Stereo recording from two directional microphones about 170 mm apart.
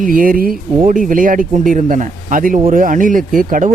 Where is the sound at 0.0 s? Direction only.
55° right (ahead or behind).